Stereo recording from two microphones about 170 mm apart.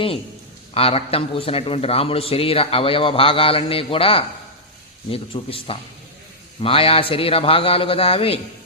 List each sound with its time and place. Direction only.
0.7 s a man's voice: 35° left (ahead or behind)